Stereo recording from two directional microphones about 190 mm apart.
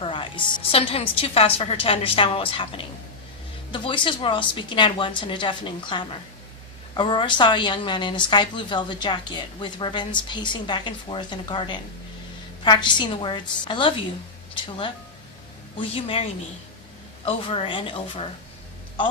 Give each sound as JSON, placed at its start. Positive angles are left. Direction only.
{"t": 0.0, "sound": "a woman's voice", "side_deg": 25}
{"t": 17.2, "sound": "a woman's voice", "side_deg": 30}